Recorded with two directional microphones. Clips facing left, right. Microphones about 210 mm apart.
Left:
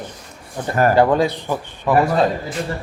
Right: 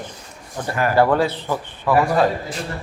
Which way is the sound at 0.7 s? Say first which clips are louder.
Left 5 dB; 45° left (ahead or behind).